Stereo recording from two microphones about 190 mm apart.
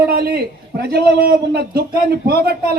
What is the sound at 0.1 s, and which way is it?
A man's voice, 55° right (ahead or behind).